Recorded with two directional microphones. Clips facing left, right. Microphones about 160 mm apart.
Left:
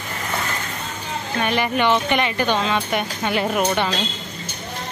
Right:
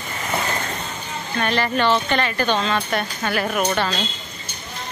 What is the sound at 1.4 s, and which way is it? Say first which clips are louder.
Speech: even; 15° left (ahead or behind).